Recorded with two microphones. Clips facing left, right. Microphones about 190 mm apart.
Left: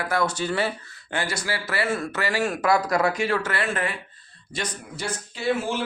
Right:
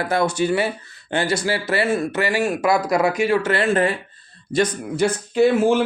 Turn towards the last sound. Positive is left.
turn(degrees=-55)  # may be behind; listen again after turning